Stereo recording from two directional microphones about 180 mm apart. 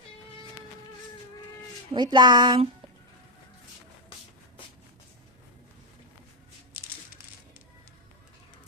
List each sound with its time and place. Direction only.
1.9 s speech: 25° right (ahead or behind)